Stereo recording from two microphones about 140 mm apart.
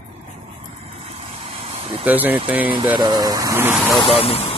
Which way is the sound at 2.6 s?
35° right (ahead or behind).